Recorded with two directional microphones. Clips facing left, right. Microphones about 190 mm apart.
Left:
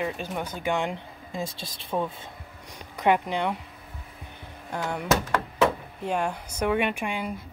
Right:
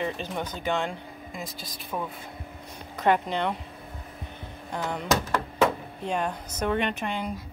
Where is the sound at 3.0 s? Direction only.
15° left (ahead or behind).